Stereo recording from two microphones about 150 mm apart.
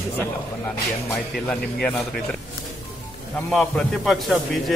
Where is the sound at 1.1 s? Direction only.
10° left (ahead or behind).